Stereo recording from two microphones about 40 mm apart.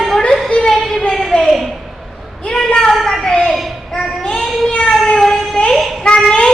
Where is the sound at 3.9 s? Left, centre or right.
Left.